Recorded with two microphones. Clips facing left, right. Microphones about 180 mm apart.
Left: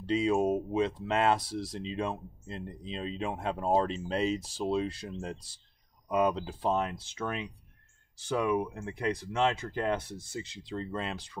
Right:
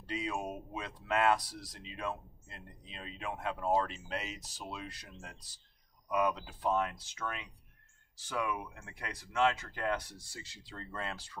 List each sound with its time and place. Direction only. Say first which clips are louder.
0.0 s speech: left 11 dB; 25° left (ahead or behind)